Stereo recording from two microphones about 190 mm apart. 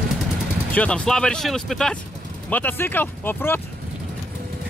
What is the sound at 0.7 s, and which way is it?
Speech, 5° left (ahead or behind).